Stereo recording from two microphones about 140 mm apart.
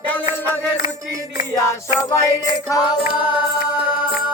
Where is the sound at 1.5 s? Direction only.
20° left (ahead or behind).